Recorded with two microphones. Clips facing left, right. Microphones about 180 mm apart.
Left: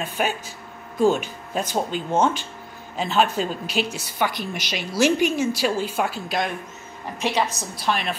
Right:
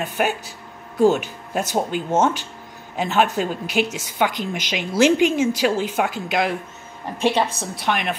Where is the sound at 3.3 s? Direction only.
10° right (ahead or behind).